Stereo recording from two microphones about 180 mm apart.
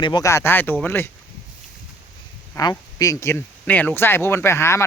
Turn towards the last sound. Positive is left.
turn(degrees=15)  # may be behind; listen again after turning